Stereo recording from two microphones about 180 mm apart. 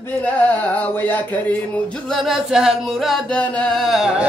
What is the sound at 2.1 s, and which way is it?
Mantra, centre (ahead or behind).